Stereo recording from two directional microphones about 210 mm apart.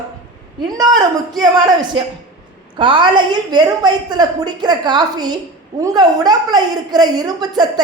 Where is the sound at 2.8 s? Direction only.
25° right (ahead or behind).